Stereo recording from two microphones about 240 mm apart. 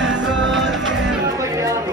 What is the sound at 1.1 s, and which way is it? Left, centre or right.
Music, centre.